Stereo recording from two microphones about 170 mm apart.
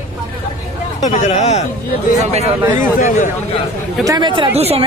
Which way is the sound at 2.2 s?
40° right (ahead or behind).